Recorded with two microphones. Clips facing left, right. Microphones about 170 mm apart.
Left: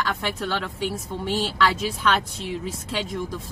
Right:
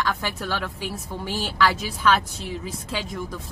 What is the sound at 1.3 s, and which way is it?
Speech, 30° left (ahead or behind).